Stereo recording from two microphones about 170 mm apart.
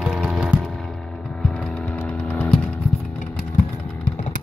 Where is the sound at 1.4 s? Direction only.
5° left (ahead or behind).